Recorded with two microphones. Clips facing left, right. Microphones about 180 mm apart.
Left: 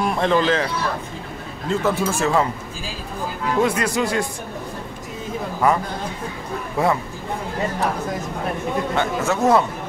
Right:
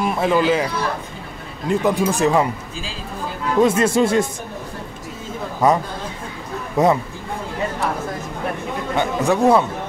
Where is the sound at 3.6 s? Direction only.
25° right (ahead or behind).